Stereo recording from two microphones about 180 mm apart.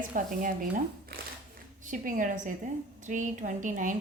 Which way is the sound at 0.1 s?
50° right (ahead or behind).